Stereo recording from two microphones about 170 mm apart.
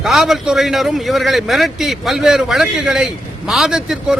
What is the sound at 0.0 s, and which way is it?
A man's voice, centre (ahead or behind).